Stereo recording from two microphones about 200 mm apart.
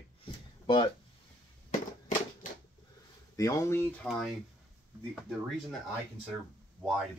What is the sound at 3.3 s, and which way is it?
Speech, 15° left (ahead or behind).